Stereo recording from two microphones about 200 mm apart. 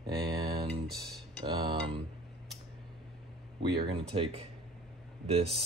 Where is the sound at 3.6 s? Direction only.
25° right (ahead or behind).